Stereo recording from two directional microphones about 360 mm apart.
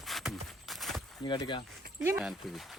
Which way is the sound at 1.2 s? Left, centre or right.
Centre.